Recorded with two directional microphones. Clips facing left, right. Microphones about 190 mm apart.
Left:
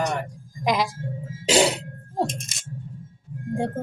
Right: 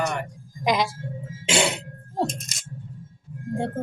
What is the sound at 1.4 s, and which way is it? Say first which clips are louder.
Throat clearing: left 4 dB; 35° left (ahead or behind).